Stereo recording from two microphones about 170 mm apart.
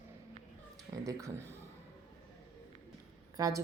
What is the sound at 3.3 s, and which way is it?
Speech, 20° right (ahead or behind).